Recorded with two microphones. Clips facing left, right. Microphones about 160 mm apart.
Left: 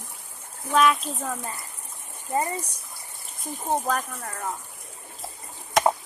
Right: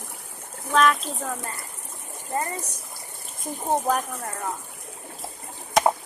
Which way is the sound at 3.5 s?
40° right (ahead or behind).